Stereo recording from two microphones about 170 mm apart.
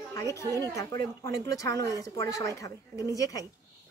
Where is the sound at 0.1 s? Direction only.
20° left (ahead or behind).